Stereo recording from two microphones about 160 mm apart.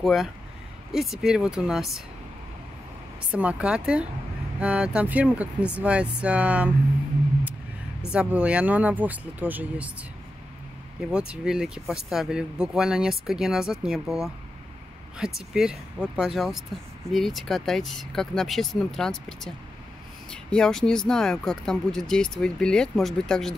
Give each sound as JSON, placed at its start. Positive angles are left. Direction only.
{"t": 0.0, "sound": "speech", "side_deg": 0}
{"t": 3.3, "sound": "speech", "side_deg": -10}
{"t": 8.1, "sound": "speech", "side_deg": -10}
{"t": 11.0, "sound": "speech", "side_deg": -5}